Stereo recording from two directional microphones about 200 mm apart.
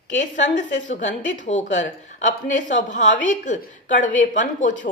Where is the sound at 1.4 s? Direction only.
35° left (ahead or behind).